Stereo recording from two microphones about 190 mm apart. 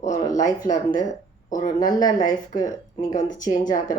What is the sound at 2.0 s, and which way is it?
Speech, 20° left (ahead or behind).